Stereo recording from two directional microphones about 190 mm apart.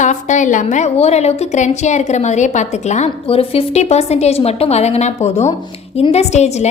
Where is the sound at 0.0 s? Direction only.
40° left (ahead or behind).